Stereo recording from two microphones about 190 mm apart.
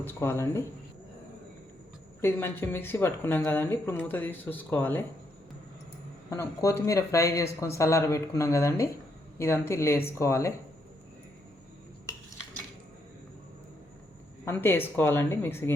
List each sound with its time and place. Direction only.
0.0 s a woman's voice: 10° left (ahead or behind)
2.2 s a woman's voice: 10° left (ahead or behind)
6.3 s a woman's voice: 15° left (ahead or behind)
14.4 s a woman's voice: 10° left (ahead or behind)